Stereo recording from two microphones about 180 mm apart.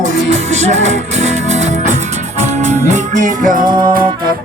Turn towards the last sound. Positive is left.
turn(degrees=-50)  # may be behind; listen again after turning